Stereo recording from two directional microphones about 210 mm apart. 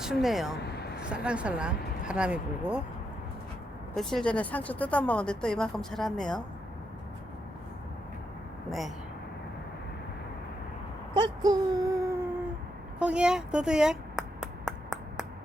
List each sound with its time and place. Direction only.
0.0 s speech: centre (ahead or behind)
0.7 s a sound: 50° left (ahead or behind)
1.0 s speech: 5° right (ahead or behind)
3.9 s speech: 5° left (ahead or behind)
11.1 s speech: 20° right (ahead or behind)
13.0 s a sound: 5° right (ahead or behind)